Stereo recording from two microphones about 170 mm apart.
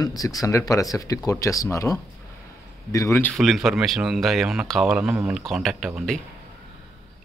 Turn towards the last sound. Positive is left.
turn(degrees=0)  # may be behind; listen again after turning